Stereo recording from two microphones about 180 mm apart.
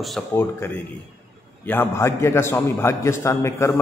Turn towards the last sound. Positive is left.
turn(degrees=15)  # may be behind; listen again after turning